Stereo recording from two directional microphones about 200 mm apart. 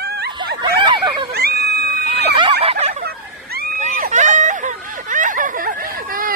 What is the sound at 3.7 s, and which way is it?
Vehicle, 40° right (ahead or behind).